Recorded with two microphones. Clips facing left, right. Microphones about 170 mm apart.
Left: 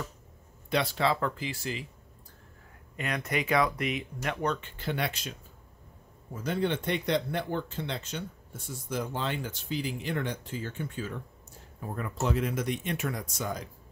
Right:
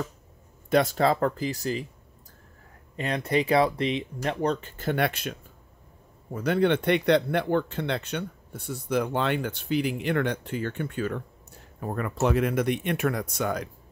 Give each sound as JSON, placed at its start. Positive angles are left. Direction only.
{"t": 0.7, "sound": "speech", "side_deg": -45}
{"t": 3.0, "sound": "speech", "side_deg": -30}
{"t": 6.3, "sound": "speech", "side_deg": -65}